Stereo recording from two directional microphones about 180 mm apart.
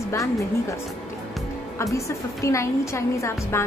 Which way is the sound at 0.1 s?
15° left (ahead or behind).